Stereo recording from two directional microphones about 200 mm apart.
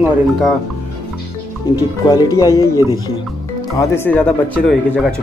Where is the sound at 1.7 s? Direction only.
20° left (ahead or behind); by 5.1 s centre (ahead or behind).